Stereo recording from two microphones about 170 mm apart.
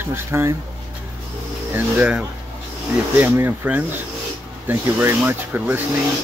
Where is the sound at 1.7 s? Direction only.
10° right (ahead or behind).